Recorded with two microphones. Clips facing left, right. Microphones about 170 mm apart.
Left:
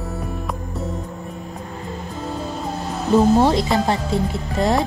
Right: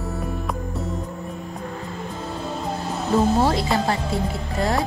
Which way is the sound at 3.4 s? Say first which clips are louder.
Left 3 dB; 20° left (ahead or behind).